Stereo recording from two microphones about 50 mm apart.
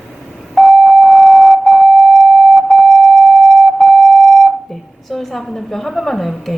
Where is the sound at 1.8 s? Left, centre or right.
Right.